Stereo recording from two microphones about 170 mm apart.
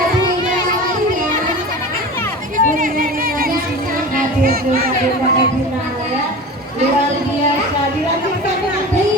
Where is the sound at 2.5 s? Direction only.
50° right (ahead or behind).